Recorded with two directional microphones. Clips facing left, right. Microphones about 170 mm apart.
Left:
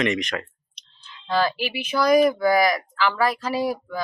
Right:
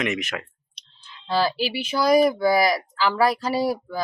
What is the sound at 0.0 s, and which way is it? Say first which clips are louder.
Speech: left 3 dB; 5° right (ahead or behind).